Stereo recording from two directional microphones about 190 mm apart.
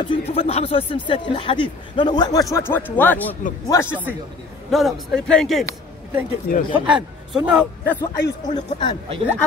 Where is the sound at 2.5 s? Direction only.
10° left (ahead or behind).